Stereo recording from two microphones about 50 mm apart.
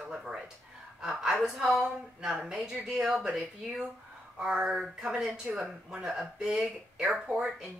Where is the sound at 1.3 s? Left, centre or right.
Centre.